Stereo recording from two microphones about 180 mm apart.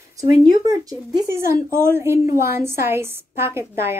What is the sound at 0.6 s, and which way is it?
Speech, 20° right (ahead or behind).